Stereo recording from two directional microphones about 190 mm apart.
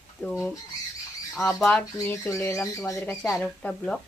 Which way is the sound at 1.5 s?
5° left (ahead or behind).